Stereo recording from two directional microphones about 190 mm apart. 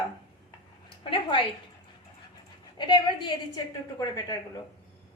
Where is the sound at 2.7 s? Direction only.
25° left (ahead or behind).